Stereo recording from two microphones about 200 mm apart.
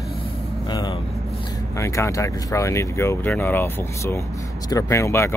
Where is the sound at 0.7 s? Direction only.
20° left (ahead or behind).